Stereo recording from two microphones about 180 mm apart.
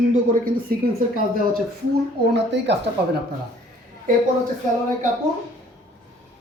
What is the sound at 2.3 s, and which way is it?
Speech, 75° right (ahead or behind).